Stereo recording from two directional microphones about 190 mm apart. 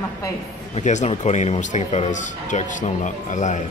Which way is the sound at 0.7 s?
40° left (ahead or behind).